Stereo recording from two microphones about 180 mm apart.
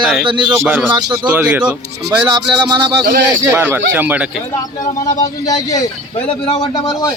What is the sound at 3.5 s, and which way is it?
Speech, 10° right (ahead or behind).